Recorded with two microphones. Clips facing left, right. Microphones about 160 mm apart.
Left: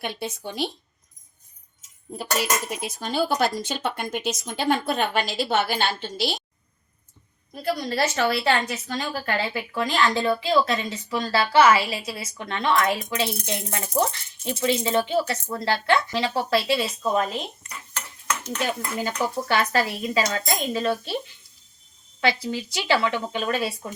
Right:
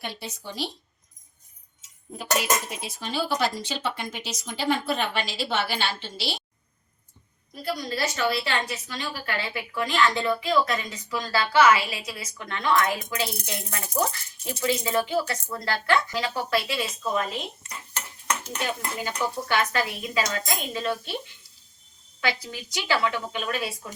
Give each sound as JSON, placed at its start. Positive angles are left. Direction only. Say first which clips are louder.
{"t": 0.0, "sound": "speech", "louder": "left 5 dB", "side_deg": 60}
{"t": 2.6, "sound": "speech", "louder": "left 4 dB", "side_deg": 45}
{"t": 7.9, "sound": "a woman's voice", "louder": "left 3 dB", "side_deg": 50}
{"t": 19.0, "sound": "speech", "louder": "left 3 dB", "side_deg": 35}
{"t": 22.2, "sound": "a woman's voice", "louder": "left 5 dB", "side_deg": 30}